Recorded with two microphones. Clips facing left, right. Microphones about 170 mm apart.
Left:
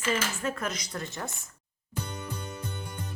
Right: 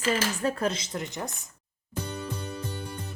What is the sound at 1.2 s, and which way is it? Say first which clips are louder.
Speech: right 1 dB; centre (ahead or behind).